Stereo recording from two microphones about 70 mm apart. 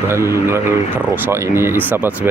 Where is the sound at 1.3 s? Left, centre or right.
Right.